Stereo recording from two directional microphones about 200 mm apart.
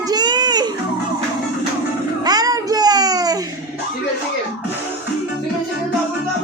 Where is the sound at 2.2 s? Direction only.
20° right (ahead or behind).